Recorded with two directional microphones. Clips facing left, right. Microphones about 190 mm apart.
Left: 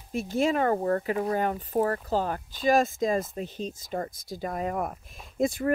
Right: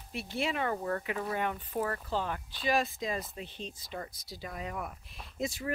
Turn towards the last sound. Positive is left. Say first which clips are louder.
# left 9 dB
turn(degrees=50)  # may be behind; listen again after turning